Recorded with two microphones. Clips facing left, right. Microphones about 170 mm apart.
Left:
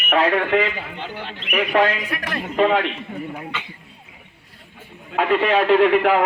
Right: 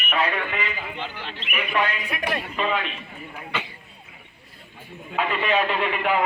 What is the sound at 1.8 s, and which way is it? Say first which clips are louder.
Speech: left 6 dB; 90° left.